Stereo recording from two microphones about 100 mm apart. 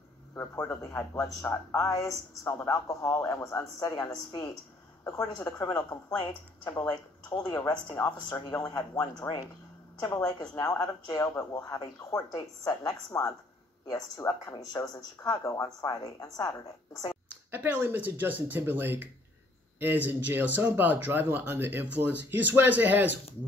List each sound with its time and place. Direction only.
0.3 s a man's voice: 25° left (ahead or behind)
10.6 s a man's voice: 35° left (ahead or behind)
17.5 s a sound: 15° right (ahead or behind)
17.8 s speech: 20° right (ahead or behind)